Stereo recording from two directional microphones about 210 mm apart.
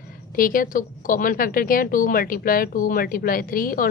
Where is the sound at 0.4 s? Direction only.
40° left (ahead or behind).